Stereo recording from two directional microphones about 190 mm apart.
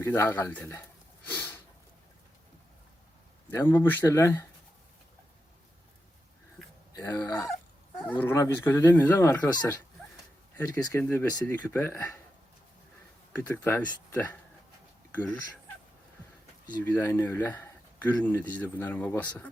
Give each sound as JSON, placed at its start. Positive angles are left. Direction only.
{"t": 0.0, "sound": "speech", "side_deg": 15}
{"t": 1.3, "sound": "a sound", "side_deg": 10}
{"t": 3.5, "sound": "speech", "side_deg": 15}
{"t": 6.6, "sound": "a sound", "side_deg": 0}
{"t": 6.9, "sound": "speech", "side_deg": 15}
{"t": 10.6, "sound": "speech", "side_deg": 10}
{"t": 13.3, "sound": "speech", "side_deg": 10}
{"t": 16.9, "sound": "speech", "side_deg": 10}